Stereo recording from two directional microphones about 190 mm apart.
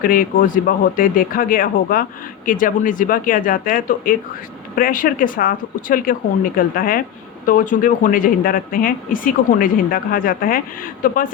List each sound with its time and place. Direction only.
0.0 s speech: 45° left (ahead or behind)